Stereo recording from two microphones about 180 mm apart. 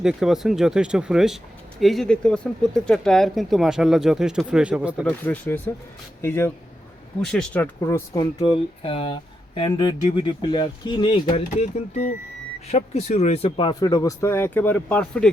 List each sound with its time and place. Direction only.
0.0 s speech: 5° right (ahead or behind)
5.0 s speech: 10° left (ahead or behind)